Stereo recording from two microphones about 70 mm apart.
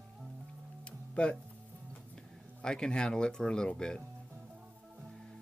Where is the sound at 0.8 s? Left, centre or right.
Centre.